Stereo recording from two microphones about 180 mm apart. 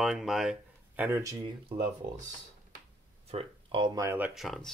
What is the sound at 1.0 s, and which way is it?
Speech, 15° right (ahead or behind).